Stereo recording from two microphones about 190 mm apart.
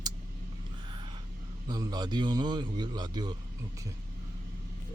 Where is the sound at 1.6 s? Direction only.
20° right (ahead or behind).